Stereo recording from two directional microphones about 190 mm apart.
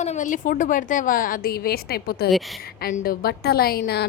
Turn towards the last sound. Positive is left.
turn(degrees=60)  # may be behind; listen again after turning